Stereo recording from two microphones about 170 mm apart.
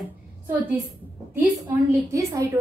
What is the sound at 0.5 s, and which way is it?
A woman's voice, 10° right (ahead or behind).